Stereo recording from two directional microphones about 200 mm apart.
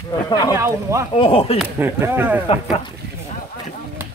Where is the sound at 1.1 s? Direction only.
25° left (ahead or behind).